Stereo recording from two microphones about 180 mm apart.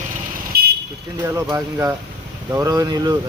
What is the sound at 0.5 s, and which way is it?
Car alarm, 60° right (ahead or behind).